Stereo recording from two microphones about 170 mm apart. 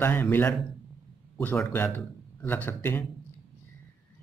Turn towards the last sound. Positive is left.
turn(degrees=15)  # may be behind; listen again after turning